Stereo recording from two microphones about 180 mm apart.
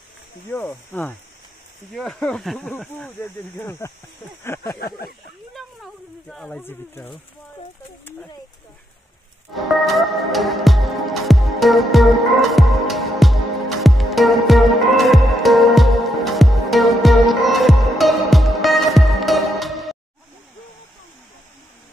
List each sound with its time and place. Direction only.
0.5 s speech: 10° left (ahead or behind)
3.5 s speech: 15° left (ahead or behind)
4.7 s speech: 55° left (ahead or behind)
5.5 s a sound: centre (ahead or behind)
9.5 s music: centre (ahead or behind)